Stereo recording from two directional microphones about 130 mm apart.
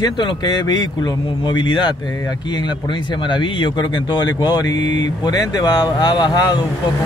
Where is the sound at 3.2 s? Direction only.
35° left (ahead or behind).